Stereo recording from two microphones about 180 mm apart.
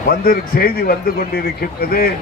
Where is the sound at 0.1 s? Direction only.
55° left (ahead or behind).